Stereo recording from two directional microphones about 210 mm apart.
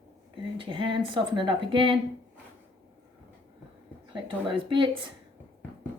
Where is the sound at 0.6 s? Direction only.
25° right (ahead or behind).